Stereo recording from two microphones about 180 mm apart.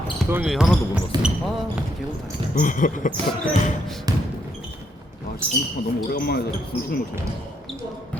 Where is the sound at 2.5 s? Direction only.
45° left (ahead or behind).